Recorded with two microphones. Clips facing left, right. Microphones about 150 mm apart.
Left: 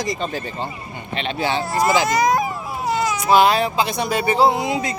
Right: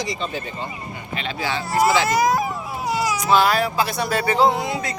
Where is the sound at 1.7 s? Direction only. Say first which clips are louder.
Right 3 dB; centre (ahead or behind).